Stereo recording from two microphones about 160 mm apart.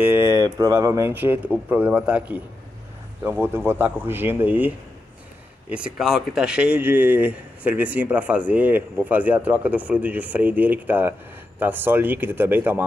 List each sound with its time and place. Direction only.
0.0 s speech: 15° right (ahead or behind)